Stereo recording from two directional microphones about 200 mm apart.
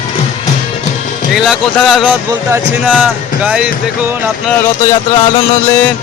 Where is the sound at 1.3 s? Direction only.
Centre (ahead or behind).